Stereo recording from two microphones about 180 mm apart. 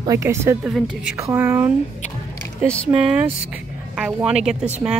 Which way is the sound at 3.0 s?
5° right (ahead or behind).